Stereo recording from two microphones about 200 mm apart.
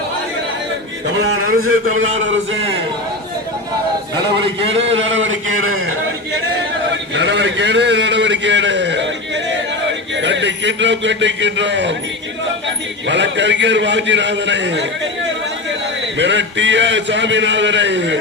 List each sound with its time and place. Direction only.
4.4 s a man's voice: 30° right (ahead or behind)
5.1 s a man's voice: 75° right (ahead or behind); by 5.9 s 90° right
7.1 s a man's voice: 60° right (ahead or behind)
16.1 s a man's voice: 60° right (ahead or behind)